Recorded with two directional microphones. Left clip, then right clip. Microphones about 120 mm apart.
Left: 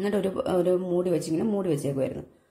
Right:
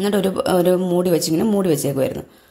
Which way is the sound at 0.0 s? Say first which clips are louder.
Right 7 dB; 5° right (ahead or behind).